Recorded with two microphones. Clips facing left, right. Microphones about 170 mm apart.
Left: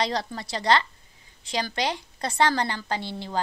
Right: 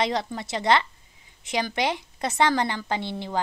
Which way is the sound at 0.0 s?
20° right (ahead or behind).